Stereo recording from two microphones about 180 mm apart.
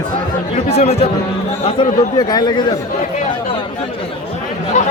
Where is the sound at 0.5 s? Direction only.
40° left (ahead or behind).